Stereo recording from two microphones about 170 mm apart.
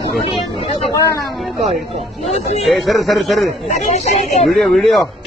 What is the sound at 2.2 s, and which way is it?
Speech, 40° left (ahead or behind).